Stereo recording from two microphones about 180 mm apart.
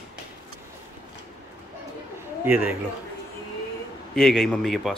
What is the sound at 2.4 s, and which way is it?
Speech, 10° right (ahead or behind).